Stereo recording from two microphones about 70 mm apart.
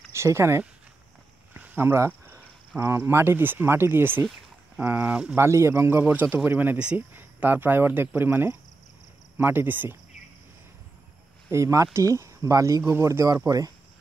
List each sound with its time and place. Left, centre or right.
0.1 s speech: right
1.5 s a sound: right
2.8 s speech: right
5.3 s speech: right
11.5 s speech: right
12.8 s speech: right